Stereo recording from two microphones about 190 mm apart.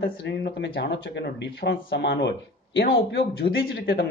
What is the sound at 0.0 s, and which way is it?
Speech, 60° left (ahead or behind).